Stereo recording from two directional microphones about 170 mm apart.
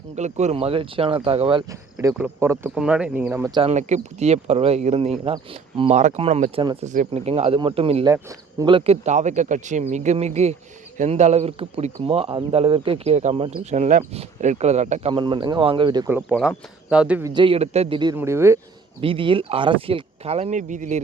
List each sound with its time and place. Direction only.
0.2 s speech: 40° right (ahead or behind)
2.1 s speech: 10° right (ahead or behind)
3.5 s speech: 35° right (ahead or behind)
5.9 s speech: 45° right (ahead or behind)
8.0 s speech: 20° right (ahead or behind)
8.7 s speech: 40° right (ahead or behind)
15.1 s speech: 30° right (ahead or behind)
16.9 s speech: 5° right (ahead or behind)
17.2 s speech: 30° right (ahead or behind)
18.2 s speech: 15° right (ahead or behind)
19.0 s speech: 30° right (ahead or behind); by 21.0 s 45° right (ahead or behind)